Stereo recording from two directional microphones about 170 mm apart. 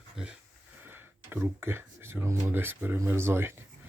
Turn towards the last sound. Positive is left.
turn(degrees=-15)  # may be behind; listen again after turning